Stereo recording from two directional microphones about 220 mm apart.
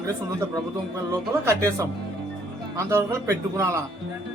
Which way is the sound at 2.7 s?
15° right (ahead or behind).